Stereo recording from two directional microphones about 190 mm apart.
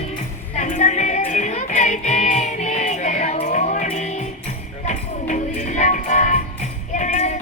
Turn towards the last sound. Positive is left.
turn(degrees=40)  # may be behind; listen again after turning